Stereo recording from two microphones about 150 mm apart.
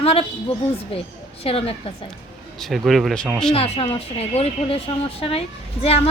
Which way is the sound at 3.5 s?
40° left (ahead or behind).